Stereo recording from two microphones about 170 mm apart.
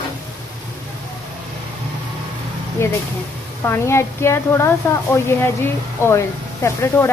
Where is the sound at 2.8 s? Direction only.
15° left (ahead or behind).